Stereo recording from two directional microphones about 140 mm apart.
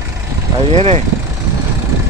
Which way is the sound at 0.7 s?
45° right (ahead or behind).